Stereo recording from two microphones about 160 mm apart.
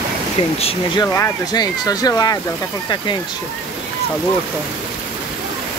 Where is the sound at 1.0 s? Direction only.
20° left (ahead or behind).